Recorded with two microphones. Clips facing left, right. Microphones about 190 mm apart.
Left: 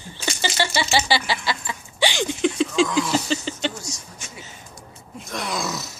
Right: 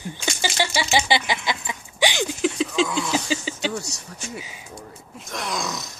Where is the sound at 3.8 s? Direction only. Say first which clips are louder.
Right 2 dB; 65° right (ahead or behind).